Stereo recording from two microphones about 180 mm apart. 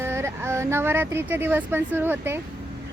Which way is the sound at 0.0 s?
15° right (ahead or behind).